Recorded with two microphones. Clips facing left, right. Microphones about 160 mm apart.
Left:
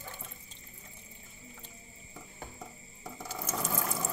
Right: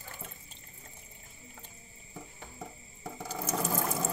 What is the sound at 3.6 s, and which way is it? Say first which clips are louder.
Water: right 3 dB; 25° right (ahead or behind).